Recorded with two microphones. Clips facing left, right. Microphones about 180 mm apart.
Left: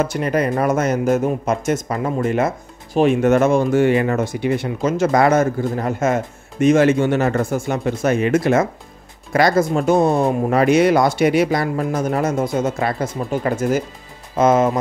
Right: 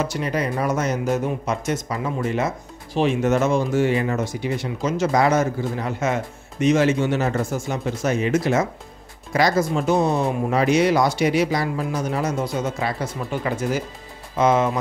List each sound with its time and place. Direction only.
0.0 s speech: 50° left (ahead or behind)